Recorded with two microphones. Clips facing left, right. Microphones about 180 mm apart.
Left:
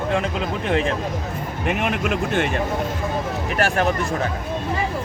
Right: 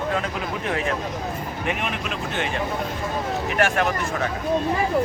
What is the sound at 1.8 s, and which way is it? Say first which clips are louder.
Speech: left 6 dB; 50° left (ahead or behind).